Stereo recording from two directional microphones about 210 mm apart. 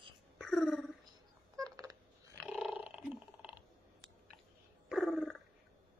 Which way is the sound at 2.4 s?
5° right (ahead or behind).